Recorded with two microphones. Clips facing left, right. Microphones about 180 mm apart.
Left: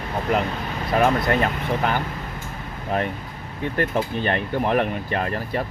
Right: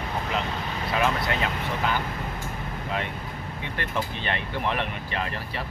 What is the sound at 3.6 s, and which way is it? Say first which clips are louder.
Speech: left 8 dB; 45° left (ahead or behind).